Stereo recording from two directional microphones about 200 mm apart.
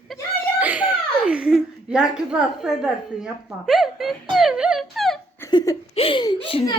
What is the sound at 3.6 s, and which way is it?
Speech, centre (ahead or behind).